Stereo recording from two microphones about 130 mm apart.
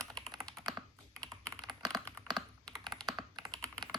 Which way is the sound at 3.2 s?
30° right (ahead or behind).